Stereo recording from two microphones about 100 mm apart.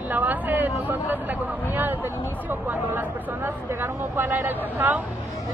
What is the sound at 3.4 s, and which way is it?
Speech, 20° right (ahead or behind).